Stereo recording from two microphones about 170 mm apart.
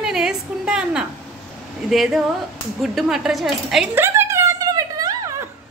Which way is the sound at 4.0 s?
15° right (ahead or behind).